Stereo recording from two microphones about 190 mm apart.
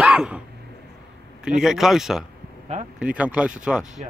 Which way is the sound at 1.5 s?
5° right (ahead or behind).